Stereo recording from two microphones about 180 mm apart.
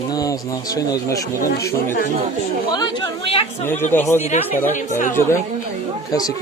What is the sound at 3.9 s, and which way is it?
Speech, 15° left (ahead or behind).